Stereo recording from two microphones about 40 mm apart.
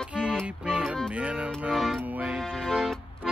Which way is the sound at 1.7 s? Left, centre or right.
Centre.